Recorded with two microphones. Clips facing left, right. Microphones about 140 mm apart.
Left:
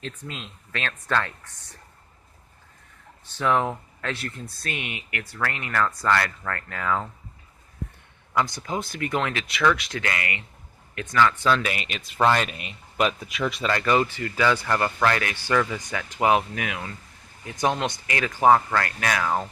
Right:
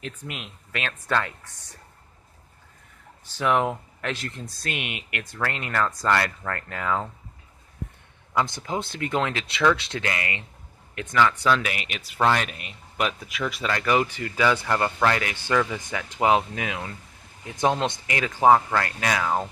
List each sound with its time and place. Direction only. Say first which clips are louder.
0.0 s speech: even; 15° right (ahead or behind)
3.3 s speech: even; 15° right (ahead or behind)
8.4 s a man's voice: even; 20° right (ahead or behind)
11.2 s speech: even; 5° right (ahead or behind)